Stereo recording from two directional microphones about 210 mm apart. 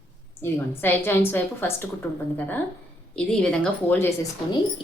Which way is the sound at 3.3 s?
5° left (ahead or behind).